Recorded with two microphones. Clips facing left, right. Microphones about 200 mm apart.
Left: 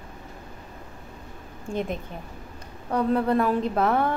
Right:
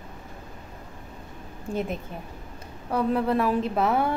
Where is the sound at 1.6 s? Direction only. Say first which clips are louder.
Even; 5° right (ahead or behind).